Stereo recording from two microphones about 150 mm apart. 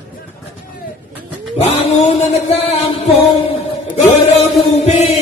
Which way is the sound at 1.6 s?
45° left (ahead or behind).